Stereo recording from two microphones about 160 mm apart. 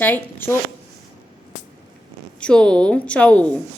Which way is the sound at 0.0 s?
10° left (ahead or behind).